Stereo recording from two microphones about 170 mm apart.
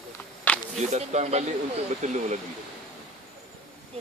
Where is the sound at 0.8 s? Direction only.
40° right (ahead or behind).